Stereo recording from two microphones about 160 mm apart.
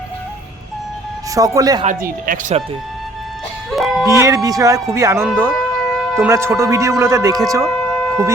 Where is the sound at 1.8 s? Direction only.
50° right (ahead or behind).